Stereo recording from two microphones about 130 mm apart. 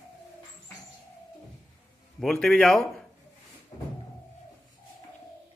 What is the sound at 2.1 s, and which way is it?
Speech, 5° left (ahead or behind).